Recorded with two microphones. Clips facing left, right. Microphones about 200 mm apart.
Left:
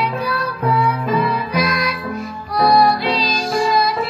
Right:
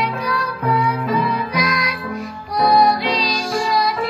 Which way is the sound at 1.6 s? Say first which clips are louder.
Left 4 dB; 15° right (ahead or behind).